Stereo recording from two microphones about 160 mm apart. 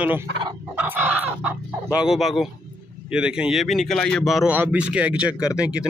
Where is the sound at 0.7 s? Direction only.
10° right (ahead or behind).